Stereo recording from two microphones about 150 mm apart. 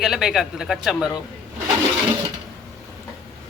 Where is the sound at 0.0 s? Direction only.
Centre (ahead or behind).